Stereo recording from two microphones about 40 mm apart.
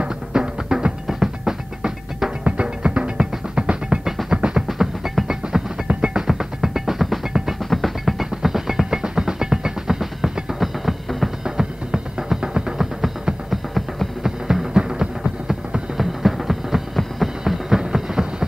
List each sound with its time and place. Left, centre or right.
0.0 s music: right
2.4 s music: right
4.6 s music: centre
5.9 s music: right
6.1 s music: centre
11.4 s music: centre
13.5 s music: centre
14.2 s music: centre
14.8 s a sound: centre